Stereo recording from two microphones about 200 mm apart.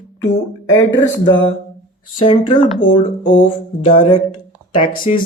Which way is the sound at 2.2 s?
25° left (ahead or behind).